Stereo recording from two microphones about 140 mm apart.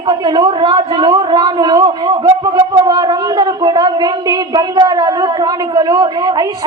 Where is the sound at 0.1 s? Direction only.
35° right (ahead or behind).